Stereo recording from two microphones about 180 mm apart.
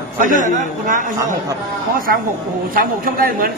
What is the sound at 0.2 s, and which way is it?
Speech, 45° right (ahead or behind).